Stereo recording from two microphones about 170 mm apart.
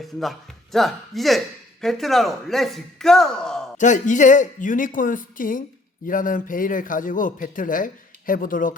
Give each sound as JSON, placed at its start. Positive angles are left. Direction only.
{"t": 0.0, "sound": "speech", "side_deg": 0}
{"t": 3.8, "sound": "a woman's voice", "side_deg": 45}